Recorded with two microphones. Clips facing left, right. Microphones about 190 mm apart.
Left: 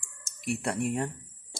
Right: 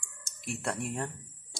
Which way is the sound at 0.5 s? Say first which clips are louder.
Left 5 dB; 10° left (ahead or behind).